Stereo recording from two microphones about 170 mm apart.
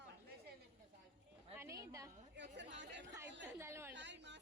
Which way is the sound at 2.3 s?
90° right.